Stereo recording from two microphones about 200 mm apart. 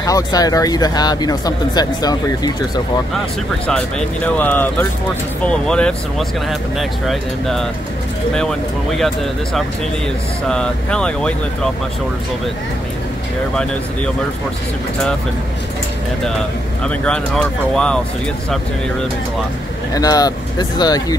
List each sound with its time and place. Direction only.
0.0 s speech: 20° left (ahead or behind)
3.6 s speech: 5° left (ahead or behind)
16.8 s speech: 5° left (ahead or behind)
19.9 s speech: 20° left (ahead or behind)